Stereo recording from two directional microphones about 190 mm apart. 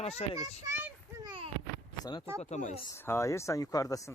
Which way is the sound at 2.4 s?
40° left (ahead or behind).